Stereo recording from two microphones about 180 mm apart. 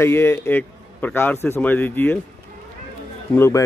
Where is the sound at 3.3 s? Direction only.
15° left (ahead or behind).